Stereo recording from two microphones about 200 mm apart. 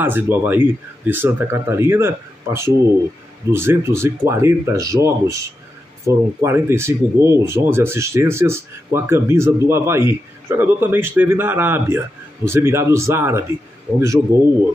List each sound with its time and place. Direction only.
0.0 s speech: 10° right (ahead or behind)